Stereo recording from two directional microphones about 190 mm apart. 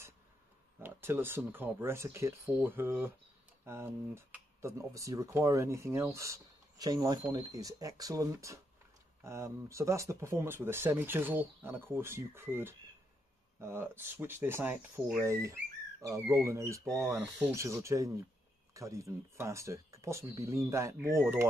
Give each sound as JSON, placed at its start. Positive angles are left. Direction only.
{"t": 0.7, "sound": "speech", "side_deg": -10}